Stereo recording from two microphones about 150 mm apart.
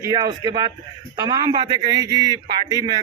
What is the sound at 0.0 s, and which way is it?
A man's voice, 25° right (ahead or behind).